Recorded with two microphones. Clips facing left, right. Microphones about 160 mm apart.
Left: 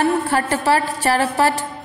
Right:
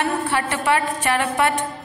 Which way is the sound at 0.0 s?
40° left (ahead or behind).